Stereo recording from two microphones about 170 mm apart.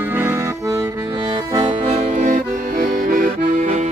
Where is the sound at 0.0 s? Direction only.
10° right (ahead or behind).